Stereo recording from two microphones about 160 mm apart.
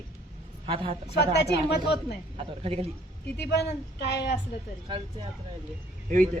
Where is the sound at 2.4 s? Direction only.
35° right (ahead or behind).